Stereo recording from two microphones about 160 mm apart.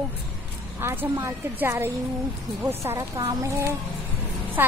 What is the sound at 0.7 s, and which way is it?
A woman's voice, 15° right (ahead or behind).